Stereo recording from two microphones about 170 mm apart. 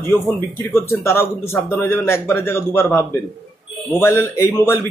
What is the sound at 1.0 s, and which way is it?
A man's voice, 15° left (ahead or behind).